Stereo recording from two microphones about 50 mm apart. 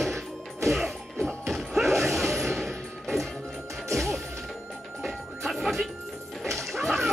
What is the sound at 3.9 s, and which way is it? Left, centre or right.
Smash, centre.